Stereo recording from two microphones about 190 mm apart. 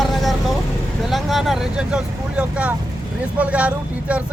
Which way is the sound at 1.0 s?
Centre (ahead or behind).